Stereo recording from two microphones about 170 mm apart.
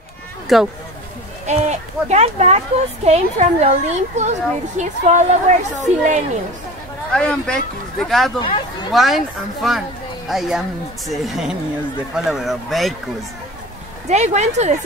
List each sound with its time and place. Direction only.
0.5 s speech: centre (ahead or behind)
1.4 s speech: 40° right (ahead or behind)
7.1 s speech: 5° left (ahead or behind)
8.4 s speech: 30° left (ahead or behind)
8.9 s speech: centre (ahead or behind)
14.0 s speech: 40° right (ahead or behind)